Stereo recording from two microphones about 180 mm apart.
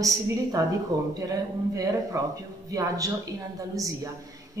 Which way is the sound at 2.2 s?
20° right (ahead or behind).